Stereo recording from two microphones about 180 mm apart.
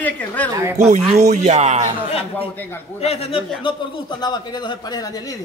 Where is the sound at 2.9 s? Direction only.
35° left (ahead or behind).